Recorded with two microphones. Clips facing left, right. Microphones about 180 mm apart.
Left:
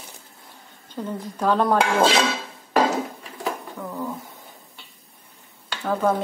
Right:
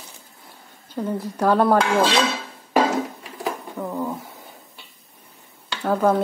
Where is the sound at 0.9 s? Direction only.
10° right (ahead or behind).